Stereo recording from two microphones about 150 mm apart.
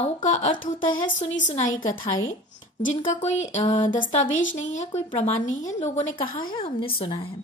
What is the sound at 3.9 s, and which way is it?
A woman's voice, 55° left (ahead or behind).